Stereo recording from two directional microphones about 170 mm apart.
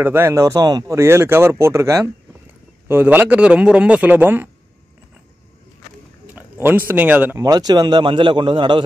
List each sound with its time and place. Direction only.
0.0 s speech: 15° right (ahead or behind)
6.2 s a sound: 10° right (ahead or behind)
6.9 s a man's voice: 10° right (ahead or behind); by 8.8 s 30° right (ahead or behind)